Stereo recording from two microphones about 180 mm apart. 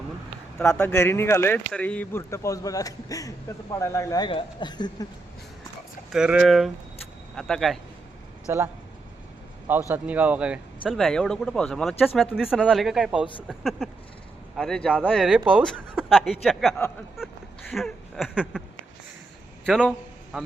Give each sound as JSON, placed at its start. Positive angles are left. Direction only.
{"t": 0.6, "sound": "speech", "side_deg": 10}
{"t": 6.1, "sound": "speech", "side_deg": -5}
{"t": 8.5, "sound": "speech", "side_deg": -15}
{"t": 9.9, "sound": "speech", "side_deg": -10}
{"t": 17.7, "sound": "a sound", "side_deg": 0}
{"t": 19.6, "sound": "a man's voice", "side_deg": -5}